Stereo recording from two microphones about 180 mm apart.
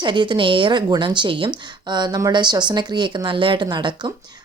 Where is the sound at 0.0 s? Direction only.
25° right (ahead or behind).